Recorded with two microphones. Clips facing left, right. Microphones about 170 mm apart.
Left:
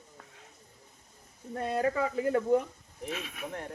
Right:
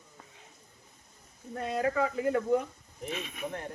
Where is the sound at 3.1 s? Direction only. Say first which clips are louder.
Right 2 dB; centre (ahead or behind).